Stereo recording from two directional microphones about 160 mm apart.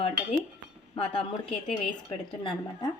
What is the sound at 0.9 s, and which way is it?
A woman's voice, 35° left (ahead or behind).